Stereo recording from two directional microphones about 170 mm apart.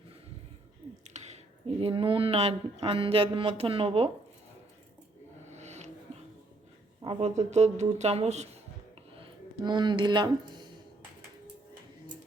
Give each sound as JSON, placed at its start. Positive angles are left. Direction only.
{"t": 1.0, "sound": "speech", "side_deg": -40}
{"t": 5.5, "sound": "a sound", "side_deg": -40}
{"t": 7.0, "sound": "speech", "side_deg": -35}
{"t": 9.2, "sound": "speech", "side_deg": -25}